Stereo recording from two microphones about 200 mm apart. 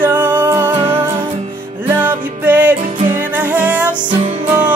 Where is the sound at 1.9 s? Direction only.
10° right (ahead or behind).